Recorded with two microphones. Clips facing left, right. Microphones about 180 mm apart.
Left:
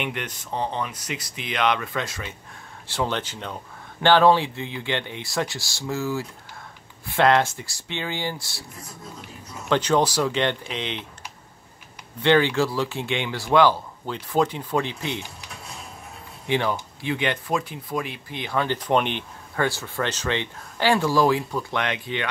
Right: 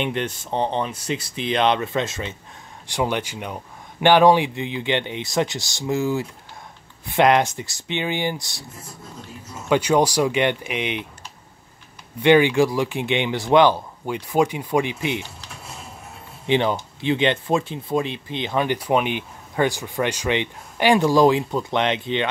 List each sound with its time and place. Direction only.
0.0 s speech: 30° right (ahead or behind)
2.9 s speech: 15° right (ahead or behind)
9.7 s speech: 10° right (ahead or behind)
12.2 s speech: 15° right (ahead or behind)
16.4 s speech: 20° right (ahead or behind)